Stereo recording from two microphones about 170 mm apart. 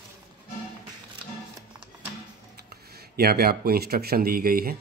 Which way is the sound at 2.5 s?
70° right (ahead or behind).